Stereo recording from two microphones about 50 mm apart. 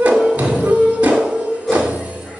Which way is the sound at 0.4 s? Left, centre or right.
Right.